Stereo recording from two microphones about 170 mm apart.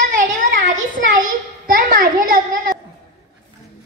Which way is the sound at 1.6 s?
55° right (ahead or behind).